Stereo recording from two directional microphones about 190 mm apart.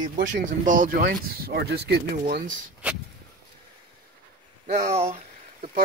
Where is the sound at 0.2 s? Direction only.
45° right (ahead or behind).